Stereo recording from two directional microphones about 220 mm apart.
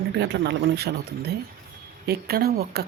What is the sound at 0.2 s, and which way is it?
Speech, 50° right (ahead or behind).